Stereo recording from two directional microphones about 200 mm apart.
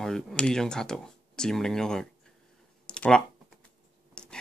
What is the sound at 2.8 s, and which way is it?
Typing, 5° left (ahead or behind).